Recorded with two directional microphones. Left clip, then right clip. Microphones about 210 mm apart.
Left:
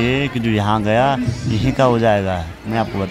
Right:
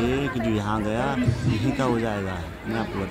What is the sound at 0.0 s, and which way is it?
Speech, 35° left (ahead or behind).